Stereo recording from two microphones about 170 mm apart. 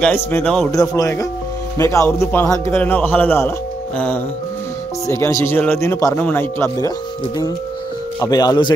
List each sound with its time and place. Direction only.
0.0 s a man's voice: 10° left (ahead or behind)
0.7 s a man's voice: 20° left (ahead or behind)
8.2 s a man's voice: 20° left (ahead or behind)